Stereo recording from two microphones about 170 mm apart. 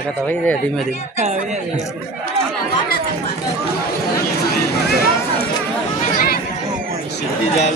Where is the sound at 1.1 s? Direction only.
45° right (ahead or behind).